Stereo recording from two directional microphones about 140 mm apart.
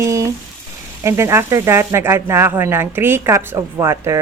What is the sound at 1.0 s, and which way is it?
Speech, 20° right (ahead or behind).